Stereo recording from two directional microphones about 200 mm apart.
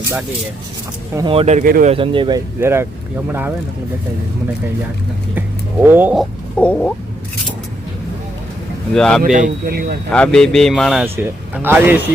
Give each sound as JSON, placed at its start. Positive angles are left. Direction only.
{"t": 1.1, "sound": "speech", "side_deg": -25}
{"t": 1.9, "sound": "speech", "side_deg": -25}
{"t": 2.6, "sound": "speech", "side_deg": -10}
{"t": 5.8, "sound": "speech", "side_deg": -10}
{"t": 6.6, "sound": "speech", "side_deg": 5}
{"t": 9.0, "sound": "speech", "side_deg": 5}
{"t": 9.2, "sound": "speech", "side_deg": -40}
{"t": 10.1, "sound": "speech", "side_deg": 5}
{"t": 11.0, "sound": "speech", "side_deg": -10}